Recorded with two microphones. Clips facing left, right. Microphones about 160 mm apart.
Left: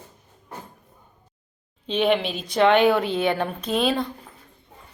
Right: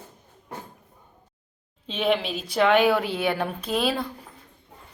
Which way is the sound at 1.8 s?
Centre (ahead or behind).